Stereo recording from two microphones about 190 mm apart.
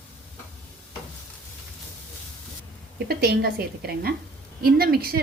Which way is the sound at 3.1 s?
55° right (ahead or behind).